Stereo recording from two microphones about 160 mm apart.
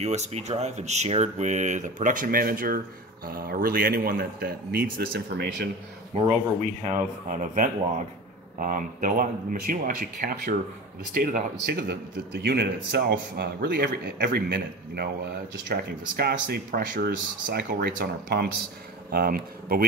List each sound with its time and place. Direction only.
0.0 s a man's voice: 45° right (ahead or behind); by 5.7 s 80° right
6.1 s a man's voice: 45° right (ahead or behind); by 12.0 s 70° right (ahead or behind)
12.4 s a man's voice: 90° right; by 17.1 s 65° right (ahead or behind)
17.6 s a man's voice: 80° right
19.1 s a man's voice: 65° right (ahead or behind)